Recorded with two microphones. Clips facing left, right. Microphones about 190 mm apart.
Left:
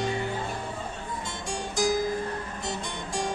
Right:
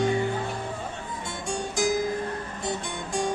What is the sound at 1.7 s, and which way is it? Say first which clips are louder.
Music: even; 55° right (ahead or behind).